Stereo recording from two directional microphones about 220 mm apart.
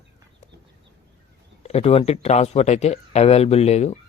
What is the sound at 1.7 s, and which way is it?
Speech, 25° left (ahead or behind).